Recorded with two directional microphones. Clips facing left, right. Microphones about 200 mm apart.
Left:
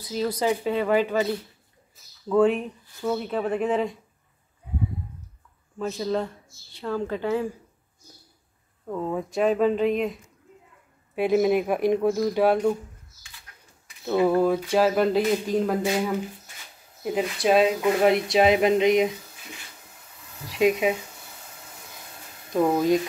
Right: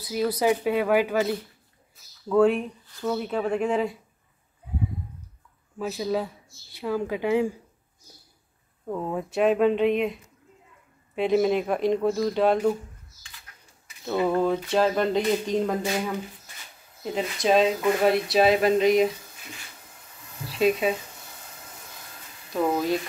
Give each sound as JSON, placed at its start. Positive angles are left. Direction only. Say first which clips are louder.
{"t": 0.0, "sound": "speech", "louder": "right 1 dB", "side_deg": -10}
{"t": 5.8, "sound": "speech", "louder": "left 1 dB", "side_deg": -5}
{"t": 8.8, "sound": "speech", "louder": "left 1 dB", "side_deg": -5}
{"t": 11.1, "sound": "speech", "louder": "left 1 dB", "side_deg": 10}
{"t": 14.0, "sound": "speech", "louder": "left 3 dB", "side_deg": 10}
{"t": 18.0, "sound": "speech", "louder": "left 1 dB", "side_deg": 20}
{"t": 20.4, "sound": "speech", "louder": "left 1 dB", "side_deg": 15}
{"t": 22.6, "sound": "speech", "louder": "left 3 dB", "side_deg": 15}